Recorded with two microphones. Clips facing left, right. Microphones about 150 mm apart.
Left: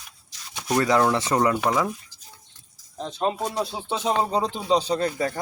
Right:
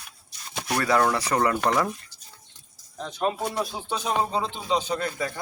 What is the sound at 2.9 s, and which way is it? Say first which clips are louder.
Speech: left 1 dB; 25° left (ahead or behind).